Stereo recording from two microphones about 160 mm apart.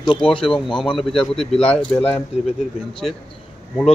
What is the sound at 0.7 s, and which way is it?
A man's voice, 5° left (ahead or behind).